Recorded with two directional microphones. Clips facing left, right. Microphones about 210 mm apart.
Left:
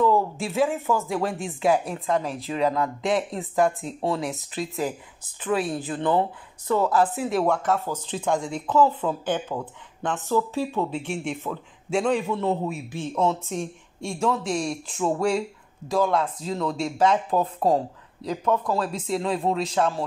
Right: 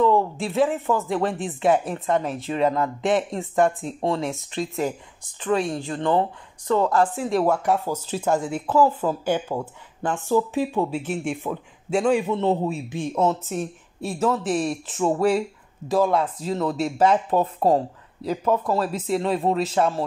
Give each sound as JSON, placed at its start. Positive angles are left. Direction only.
{"t": 0.0, "sound": "speech", "side_deg": 0}
{"t": 12.2, "sound": "a man's voice", "side_deg": -25}
{"t": 12.9, "sound": "speech", "side_deg": -10}